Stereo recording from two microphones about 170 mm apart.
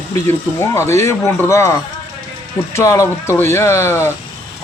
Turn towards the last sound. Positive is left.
turn(degrees=15)  # may be behind; listen again after turning